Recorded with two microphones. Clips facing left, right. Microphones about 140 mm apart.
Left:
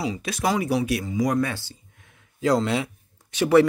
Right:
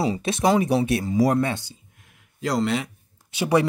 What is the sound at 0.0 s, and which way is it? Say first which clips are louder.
Speech: right 4 dB; 30° right (ahead or behind).